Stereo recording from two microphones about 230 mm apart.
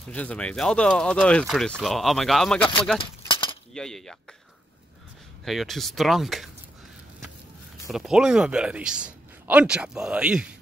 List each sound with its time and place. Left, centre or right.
0.1 s speech: centre
3.0 s a sound: left
3.7 s speech: centre
5.4 s speech: centre
7.9 s speech: centre